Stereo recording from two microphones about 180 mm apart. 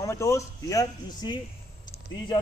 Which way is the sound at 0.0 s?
15° left (ahead or behind).